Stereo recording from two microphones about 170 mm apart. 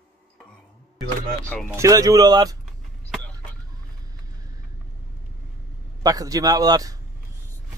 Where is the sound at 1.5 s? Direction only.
10° left (ahead or behind).